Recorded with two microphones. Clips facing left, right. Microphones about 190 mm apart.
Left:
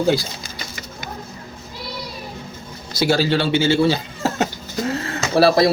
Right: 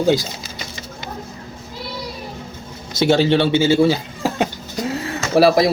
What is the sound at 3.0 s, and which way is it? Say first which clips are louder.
Speech: right 3 dB; 25° right (ahead or behind).